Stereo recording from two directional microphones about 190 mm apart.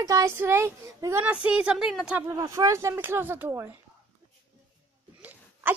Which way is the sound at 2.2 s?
20° right (ahead or behind).